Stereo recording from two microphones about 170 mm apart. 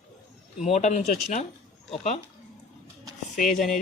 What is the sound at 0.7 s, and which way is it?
Speech, 40° left (ahead or behind).